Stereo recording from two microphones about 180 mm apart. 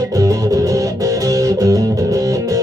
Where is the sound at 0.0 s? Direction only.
20° right (ahead or behind).